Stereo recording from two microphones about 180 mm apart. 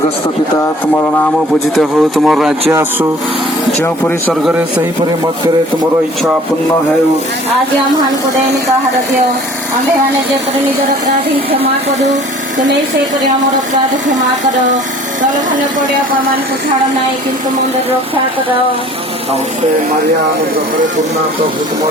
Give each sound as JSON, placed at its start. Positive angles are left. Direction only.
{"t": 1.7, "sound": "speech", "side_deg": 0}
{"t": 3.8, "sound": "speech", "side_deg": 10}